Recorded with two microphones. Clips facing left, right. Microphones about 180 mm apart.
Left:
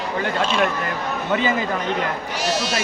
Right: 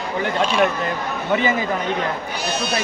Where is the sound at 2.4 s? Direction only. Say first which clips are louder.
Left 1 dB; 90° left.